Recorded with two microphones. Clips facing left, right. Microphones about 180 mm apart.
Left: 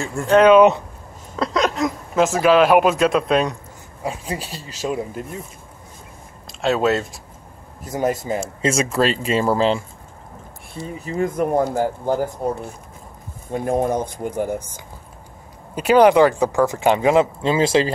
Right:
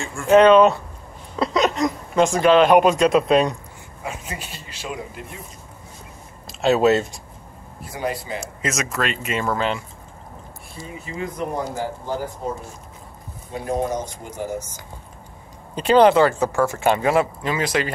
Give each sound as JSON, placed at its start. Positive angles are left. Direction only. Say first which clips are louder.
{"t": 0.3, "sound": "speech", "louder": "left 1 dB", "side_deg": 5}
{"t": 4.0, "sound": "speech", "louder": "left 5 dB", "side_deg": 35}
{"t": 6.6, "sound": "speech", "louder": "right 2 dB", "side_deg": 0}
{"t": 7.8, "sound": "speech", "louder": "left 5 dB", "side_deg": 45}
{"t": 8.6, "sound": "speech", "louder": "left 6 dB", "side_deg": 30}
{"t": 11.0, "sound": "speech", "louder": "left 7 dB", "side_deg": 45}
{"t": 13.5, "sound": "speech", "louder": "left 4 dB", "side_deg": 50}
{"t": 15.7, "sound": "speech", "louder": "left 1 dB", "side_deg": 10}